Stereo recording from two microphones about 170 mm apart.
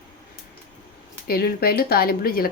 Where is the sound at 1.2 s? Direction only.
65° left (ahead or behind).